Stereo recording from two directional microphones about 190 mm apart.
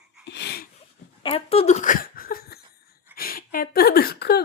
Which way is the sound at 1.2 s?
30° left (ahead or behind).